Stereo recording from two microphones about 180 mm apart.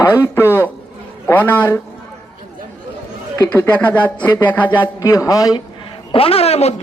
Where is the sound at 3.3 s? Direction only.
15° left (ahead or behind).